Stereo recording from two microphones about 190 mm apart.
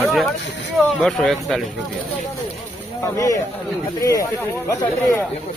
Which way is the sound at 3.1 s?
15° left (ahead or behind).